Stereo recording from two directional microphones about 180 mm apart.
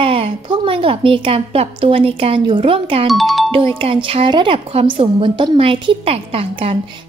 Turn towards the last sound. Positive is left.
turn(degrees=-30)  # may be behind; listen again after turning